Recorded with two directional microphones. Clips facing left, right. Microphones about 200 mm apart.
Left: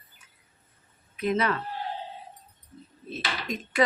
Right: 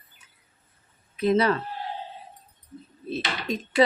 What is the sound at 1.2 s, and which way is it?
Speech, 35° right (ahead or behind).